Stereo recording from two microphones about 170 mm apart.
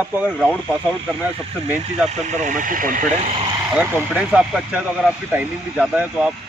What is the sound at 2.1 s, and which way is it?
Speech, 45° right (ahead or behind).